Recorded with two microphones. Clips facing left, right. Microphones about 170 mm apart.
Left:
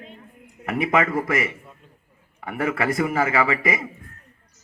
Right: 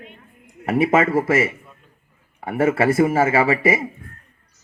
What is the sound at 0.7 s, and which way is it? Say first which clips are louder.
A man's voice: right 5 dB; 25° right (ahead or behind).